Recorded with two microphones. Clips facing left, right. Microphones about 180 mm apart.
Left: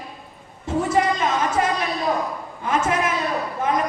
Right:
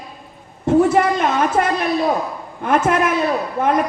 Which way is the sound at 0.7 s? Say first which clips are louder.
Right 7 dB; 60° right (ahead or behind).